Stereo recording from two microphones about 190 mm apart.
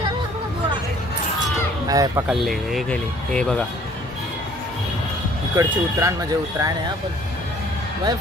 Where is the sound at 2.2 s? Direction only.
Centre (ahead or behind).